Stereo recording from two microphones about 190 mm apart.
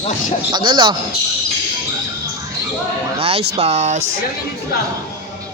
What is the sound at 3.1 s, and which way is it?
Speech, 30° right (ahead or behind).